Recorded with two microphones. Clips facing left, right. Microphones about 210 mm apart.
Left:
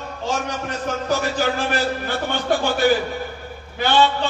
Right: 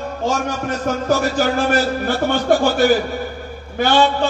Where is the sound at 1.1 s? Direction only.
40° right (ahead or behind).